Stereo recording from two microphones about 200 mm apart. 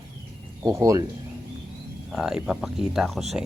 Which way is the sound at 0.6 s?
15° right (ahead or behind).